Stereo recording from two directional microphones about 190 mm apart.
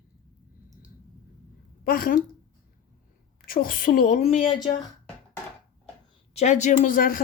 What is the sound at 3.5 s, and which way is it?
Speech, 50° left (ahead or behind).